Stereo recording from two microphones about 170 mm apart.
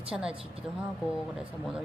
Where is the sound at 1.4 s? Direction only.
5° right (ahead or behind).